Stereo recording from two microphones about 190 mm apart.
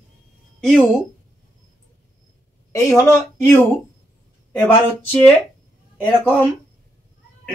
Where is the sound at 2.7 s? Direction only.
15° left (ahead or behind).